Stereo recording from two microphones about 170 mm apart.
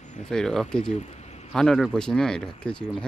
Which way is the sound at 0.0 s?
45° left (ahead or behind).